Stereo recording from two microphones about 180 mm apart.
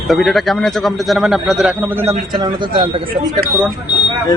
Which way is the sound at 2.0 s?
25° right (ahead or behind).